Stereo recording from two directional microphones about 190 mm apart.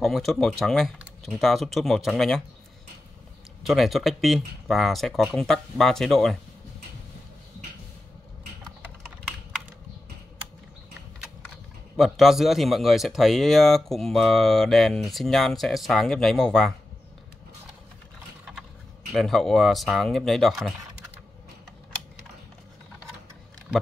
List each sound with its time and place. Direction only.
0.0 s a man's voice: centre (ahead or behind)
3.6 s a man's voice: centre (ahead or behind)
12.0 s a man's voice: centre (ahead or behind)
19.1 s a man's voice: centre (ahead or behind)